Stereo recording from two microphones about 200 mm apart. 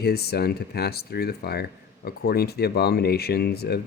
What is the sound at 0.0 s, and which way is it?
Speech, 50° left (ahead or behind).